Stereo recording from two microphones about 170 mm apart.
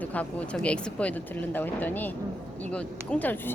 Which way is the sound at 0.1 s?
10° left (ahead or behind).